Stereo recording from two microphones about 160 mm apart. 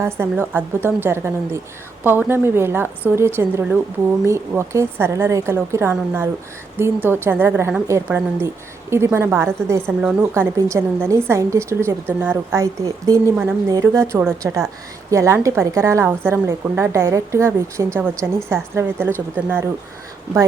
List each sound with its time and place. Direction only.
0.0 s a woman's voice: 15° right (ahead or behind)